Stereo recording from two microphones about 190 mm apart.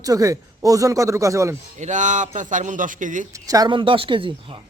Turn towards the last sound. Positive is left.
turn(degrees=-25)  # may be behind; listen again after turning